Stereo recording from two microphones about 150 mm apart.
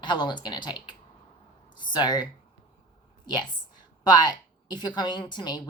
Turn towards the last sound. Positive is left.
turn(degrees=30)  # may be behind; listen again after turning